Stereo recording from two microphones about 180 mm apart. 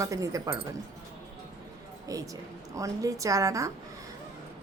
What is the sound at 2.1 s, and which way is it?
A woman's voice, 20° right (ahead or behind).